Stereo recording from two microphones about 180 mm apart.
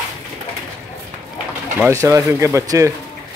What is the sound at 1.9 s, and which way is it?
Speech, 15° right (ahead or behind).